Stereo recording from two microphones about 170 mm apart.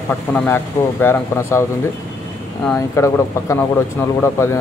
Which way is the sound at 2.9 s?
15° left (ahead or behind).